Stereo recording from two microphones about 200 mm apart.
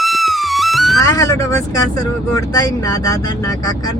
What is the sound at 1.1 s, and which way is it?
Speech, 15° left (ahead or behind).